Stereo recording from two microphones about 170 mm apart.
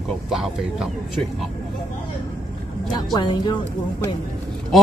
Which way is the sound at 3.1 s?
25° left (ahead or behind).